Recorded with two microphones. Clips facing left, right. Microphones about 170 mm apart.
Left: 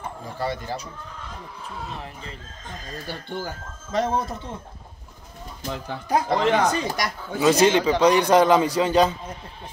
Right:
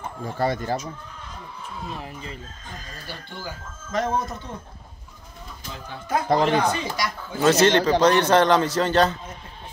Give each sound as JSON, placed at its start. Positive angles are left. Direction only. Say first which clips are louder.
{"t": 0.4, "sound": "speech", "louder": "right 4 dB", "side_deg": -50}
{"t": 3.1, "sound": "speech", "louder": "left 5 dB", "side_deg": 55}
{"t": 3.9, "sound": "speech", "louder": "left 1 dB", "side_deg": 30}
{"t": 6.0, "sound": "speech", "louder": "even", "side_deg": 40}
{"t": 7.3, "sound": "a man's voice", "louder": "even", "side_deg": 10}